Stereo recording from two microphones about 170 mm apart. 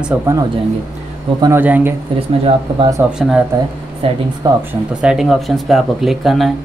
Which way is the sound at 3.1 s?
5° right (ahead or behind).